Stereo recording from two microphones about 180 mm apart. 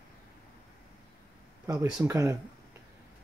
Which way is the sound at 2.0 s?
15° right (ahead or behind).